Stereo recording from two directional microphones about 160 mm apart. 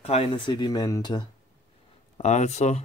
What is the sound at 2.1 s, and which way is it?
Speech, 45° left (ahead or behind).